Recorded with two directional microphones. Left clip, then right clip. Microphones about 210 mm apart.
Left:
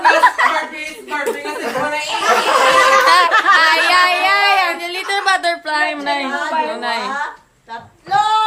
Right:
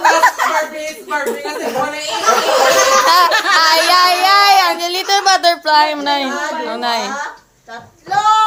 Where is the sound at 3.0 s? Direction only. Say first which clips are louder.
Even; 10° right (ahead or behind).